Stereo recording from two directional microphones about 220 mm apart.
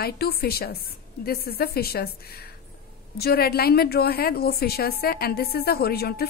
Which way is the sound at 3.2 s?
45° left (ahead or behind).